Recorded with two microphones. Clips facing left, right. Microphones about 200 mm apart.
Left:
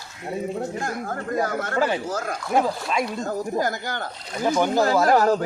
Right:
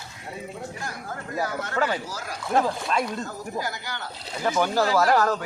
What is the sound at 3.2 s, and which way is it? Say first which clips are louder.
Speech: left 7 dB; 50° left (ahead or behind).